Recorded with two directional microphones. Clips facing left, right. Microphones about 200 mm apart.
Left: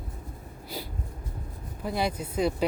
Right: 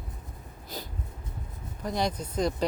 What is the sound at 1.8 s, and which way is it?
Speech, 5° left (ahead or behind).